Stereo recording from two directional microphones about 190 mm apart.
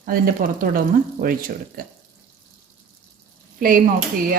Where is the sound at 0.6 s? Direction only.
50° right (ahead or behind).